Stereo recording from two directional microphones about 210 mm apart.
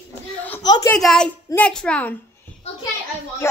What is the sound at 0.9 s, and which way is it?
A child's voice, 5° left (ahead or behind).